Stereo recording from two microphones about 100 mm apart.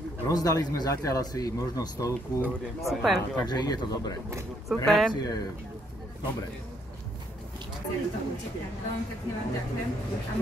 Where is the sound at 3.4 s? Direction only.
45° left (ahead or behind).